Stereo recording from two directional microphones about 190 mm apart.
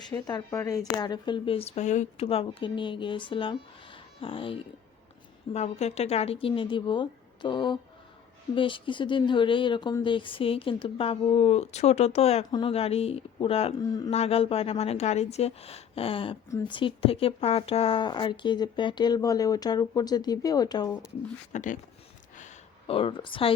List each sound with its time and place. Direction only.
0.0 s speech: 20° left (ahead or behind)
5.5 s a woman's voice: 35° left (ahead or behind); by 20.9 s 20° left (ahead or behind)
21.5 s a woman's voice: 40° left (ahead or behind)
22.4 s a sound: 35° left (ahead or behind)